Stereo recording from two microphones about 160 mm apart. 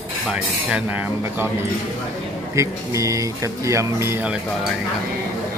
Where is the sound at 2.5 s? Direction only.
20° right (ahead or behind).